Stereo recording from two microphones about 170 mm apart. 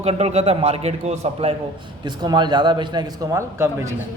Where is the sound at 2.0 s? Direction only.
25° right (ahead or behind).